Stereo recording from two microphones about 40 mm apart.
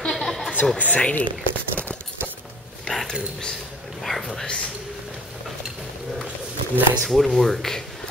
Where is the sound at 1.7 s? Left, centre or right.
Left.